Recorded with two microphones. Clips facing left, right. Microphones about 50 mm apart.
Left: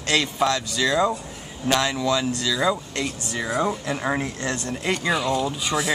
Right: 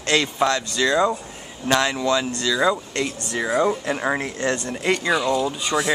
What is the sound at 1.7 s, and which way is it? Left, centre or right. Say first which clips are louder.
Speech: right 2 dB; centre.